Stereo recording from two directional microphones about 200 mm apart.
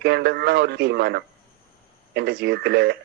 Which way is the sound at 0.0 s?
55° right (ahead or behind).